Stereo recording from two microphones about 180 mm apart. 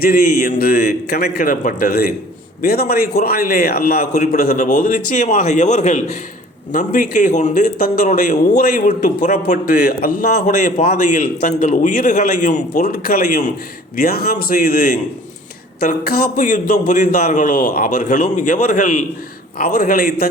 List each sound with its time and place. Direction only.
0.0 s a man's voice: 55° left (ahead or behind)